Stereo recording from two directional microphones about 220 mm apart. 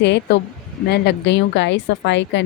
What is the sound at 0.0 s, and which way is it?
Speech, 50° left (ahead or behind).